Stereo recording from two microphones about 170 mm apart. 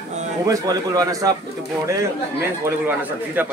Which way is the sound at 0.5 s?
20° right (ahead or behind).